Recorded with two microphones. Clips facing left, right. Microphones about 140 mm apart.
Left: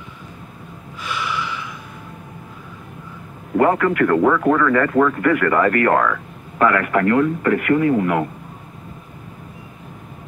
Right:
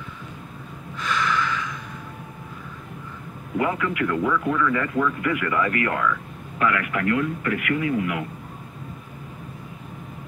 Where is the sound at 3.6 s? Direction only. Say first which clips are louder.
Left 8 dB; 55° left (ahead or behind).